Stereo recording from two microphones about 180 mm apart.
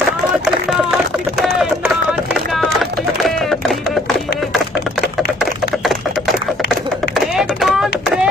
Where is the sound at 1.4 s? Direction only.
Centre (ahead or behind).